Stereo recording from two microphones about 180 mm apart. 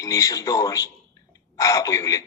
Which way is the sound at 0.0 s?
20° left (ahead or behind).